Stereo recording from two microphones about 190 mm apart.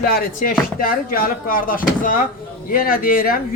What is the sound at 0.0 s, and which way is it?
Speech, 50° left (ahead or behind).